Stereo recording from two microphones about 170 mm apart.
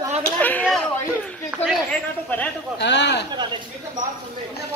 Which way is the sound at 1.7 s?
5° left (ahead or behind).